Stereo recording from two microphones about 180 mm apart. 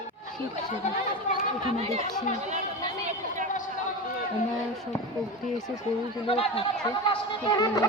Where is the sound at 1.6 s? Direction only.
35° right (ahead or behind).